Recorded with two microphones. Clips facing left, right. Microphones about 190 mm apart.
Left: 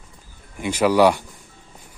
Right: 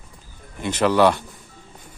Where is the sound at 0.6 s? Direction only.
10° left (ahead or behind).